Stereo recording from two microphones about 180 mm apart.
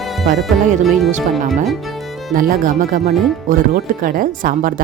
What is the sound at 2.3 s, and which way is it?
Speech, 50° right (ahead or behind).